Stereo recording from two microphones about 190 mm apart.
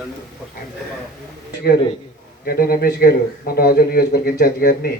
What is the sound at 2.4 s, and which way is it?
A man's voice, 50° left (ahead or behind).